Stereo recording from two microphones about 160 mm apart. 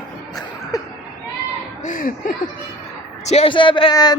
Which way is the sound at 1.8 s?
55° left (ahead or behind).